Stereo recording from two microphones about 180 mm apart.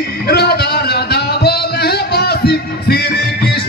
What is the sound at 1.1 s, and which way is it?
Music, 60° left (ahead or behind).